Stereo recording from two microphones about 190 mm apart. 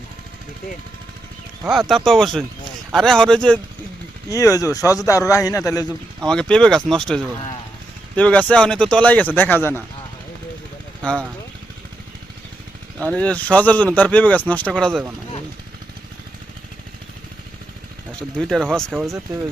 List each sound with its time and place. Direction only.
2.0 s speech: centre (ahead or behind)
4.3 s speech: 15° left (ahead or behind)
6.2 s speech: 5° left (ahead or behind)
11.0 s speech: 5° left (ahead or behind)
13.0 s speech: 5° left (ahead or behind)
18.3 s speech: centre (ahead or behind)
19.3 s speech: 15° right (ahead or behind)